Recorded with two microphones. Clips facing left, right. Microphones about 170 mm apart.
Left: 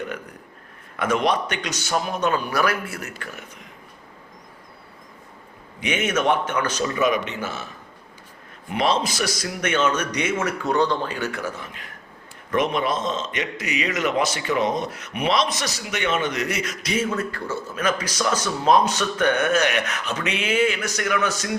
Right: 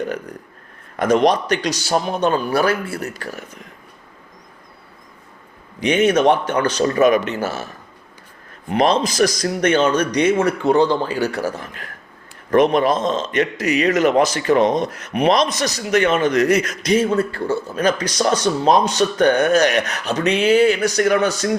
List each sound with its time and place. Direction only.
0.9 s a man's voice: 35° right (ahead or behind)
5.8 s a man's voice: 35° right (ahead or behind)
6.8 s a man's voice: 45° right (ahead or behind)
8.7 s a man's voice: 45° right (ahead or behind)